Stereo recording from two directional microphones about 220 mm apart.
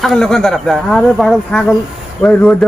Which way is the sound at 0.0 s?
Centre (ahead or behind).